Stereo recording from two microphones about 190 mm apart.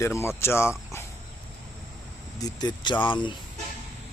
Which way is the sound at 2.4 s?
20° left (ahead or behind).